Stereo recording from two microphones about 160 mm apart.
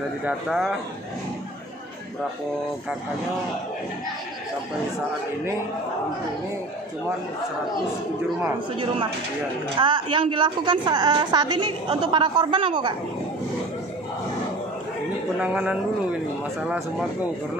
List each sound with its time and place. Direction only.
0.2 s speech: 5° right (ahead or behind)
9.8 s a woman's voice: 30° right (ahead or behind)
15.4 s speech: 5° right (ahead or behind)